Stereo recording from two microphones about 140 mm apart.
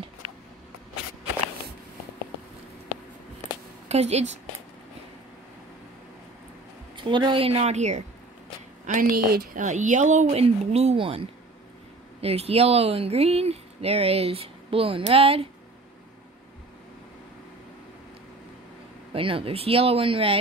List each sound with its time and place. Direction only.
3.9 s speech: 50° right (ahead or behind)
7.0 s speech: 35° right (ahead or behind); by 8.0 s 55° right (ahead or behind)
8.8 s speech: 75° right (ahead or behind); by 15.4 s 45° right (ahead or behind)
19.1 s speech: 40° right (ahead or behind)